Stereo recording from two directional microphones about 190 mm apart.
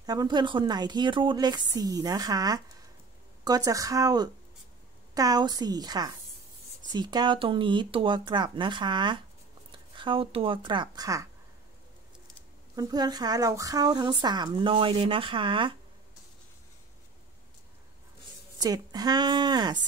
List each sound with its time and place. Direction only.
0.0 s a woman's voice: 20° right (ahead or behind)
12.7 s a woman's voice: 20° right (ahead or behind)
18.6 s a woman's voice: 20° right (ahead or behind)